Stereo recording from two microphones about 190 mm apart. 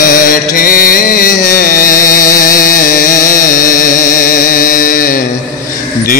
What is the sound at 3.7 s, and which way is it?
Music, 45° left (ahead or behind).